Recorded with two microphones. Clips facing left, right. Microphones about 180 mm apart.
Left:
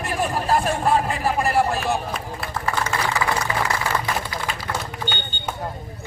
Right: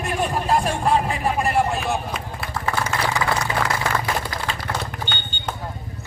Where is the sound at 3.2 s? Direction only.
5° left (ahead or behind).